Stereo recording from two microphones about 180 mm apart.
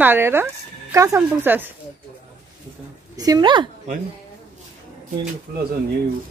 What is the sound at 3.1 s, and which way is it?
Speech, 20° right (ahead or behind).